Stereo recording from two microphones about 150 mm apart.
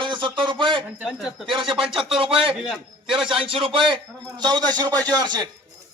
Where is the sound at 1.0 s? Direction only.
Centre (ahead or behind).